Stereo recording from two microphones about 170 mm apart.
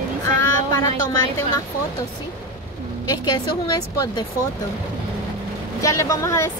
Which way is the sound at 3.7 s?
20° left (ahead or behind).